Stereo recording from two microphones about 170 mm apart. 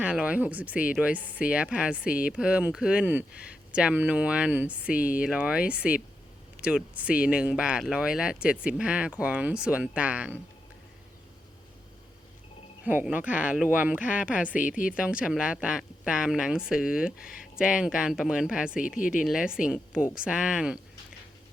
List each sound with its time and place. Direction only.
0.0 s speech: 5° right (ahead or behind)
12.8 s speech: 10° right (ahead or behind)
18.9 s speech: 50° left (ahead or behind)
19.2 s speech: centre (ahead or behind)